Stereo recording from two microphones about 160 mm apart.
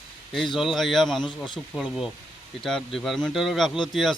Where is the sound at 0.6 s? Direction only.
Centre (ahead or behind).